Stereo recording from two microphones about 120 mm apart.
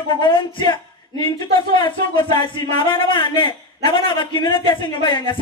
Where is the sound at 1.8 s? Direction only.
45° left (ahead or behind).